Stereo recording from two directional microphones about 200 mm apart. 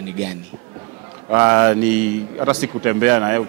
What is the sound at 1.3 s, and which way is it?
Speech, 15° right (ahead or behind).